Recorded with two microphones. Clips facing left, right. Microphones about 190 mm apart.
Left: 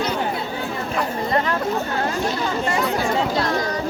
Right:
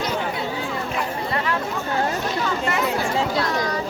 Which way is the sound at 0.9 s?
40° left (ahead or behind).